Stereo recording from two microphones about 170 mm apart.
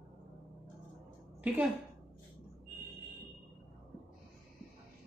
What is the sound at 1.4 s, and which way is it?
Speech, 10° right (ahead or behind).